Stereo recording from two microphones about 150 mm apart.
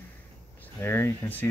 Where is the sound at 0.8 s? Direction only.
15° left (ahead or behind).